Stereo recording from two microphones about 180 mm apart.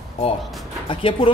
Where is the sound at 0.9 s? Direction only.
30° left (ahead or behind).